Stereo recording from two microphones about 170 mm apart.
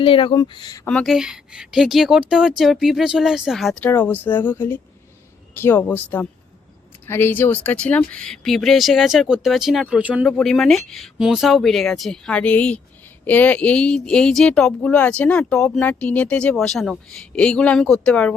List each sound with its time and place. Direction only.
0.0 s speech: 30° left (ahead or behind)
0.9 s speech: 5° left (ahead or behind)
3.8 s speech: 10° left (ahead or behind)